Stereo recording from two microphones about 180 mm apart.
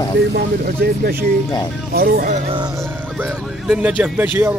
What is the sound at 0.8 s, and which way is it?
Speech, 60° right (ahead or behind).